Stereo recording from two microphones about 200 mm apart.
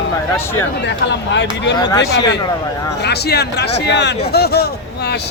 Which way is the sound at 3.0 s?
55° left (ahead or behind).